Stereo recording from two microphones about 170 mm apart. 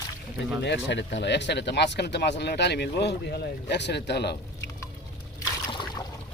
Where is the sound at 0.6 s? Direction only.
90° left.